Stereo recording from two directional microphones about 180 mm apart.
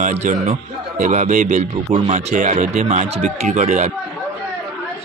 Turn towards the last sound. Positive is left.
turn(degrees=-40)  # may be behind; listen again after turning